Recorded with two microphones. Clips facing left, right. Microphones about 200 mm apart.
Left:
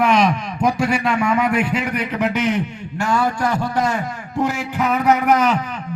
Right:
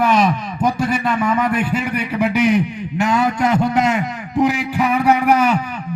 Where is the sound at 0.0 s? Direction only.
Centre (ahead or behind).